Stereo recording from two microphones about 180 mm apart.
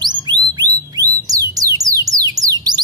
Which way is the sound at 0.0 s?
25° right (ahead or behind).